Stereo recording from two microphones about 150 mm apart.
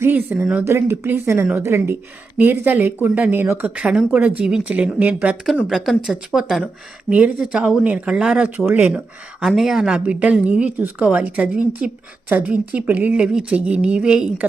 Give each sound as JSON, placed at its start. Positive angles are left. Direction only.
{"t": 0.0, "sound": "speech", "side_deg": -10}